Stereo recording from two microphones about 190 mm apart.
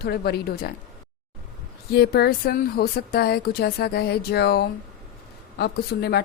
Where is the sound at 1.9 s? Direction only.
55° left (ahead or behind).